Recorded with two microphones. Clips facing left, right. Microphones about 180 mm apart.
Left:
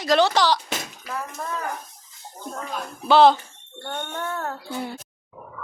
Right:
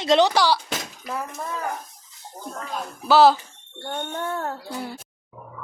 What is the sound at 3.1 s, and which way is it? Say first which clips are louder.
Speech: even; 5° right (ahead or behind).